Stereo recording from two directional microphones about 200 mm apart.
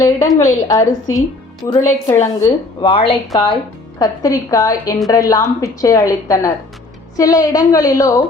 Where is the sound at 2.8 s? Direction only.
25° left (ahead or behind).